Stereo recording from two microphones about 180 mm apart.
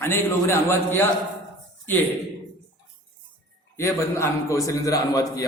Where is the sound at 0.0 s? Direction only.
15° left (ahead or behind).